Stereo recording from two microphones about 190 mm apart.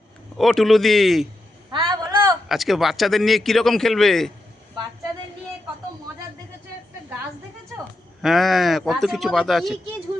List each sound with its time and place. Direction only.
0.3 s speech: centre (ahead or behind)
1.7 s a sound: 25° right (ahead or behind)
2.5 s speech: centre (ahead or behind)
8.2 s speech: centre (ahead or behind)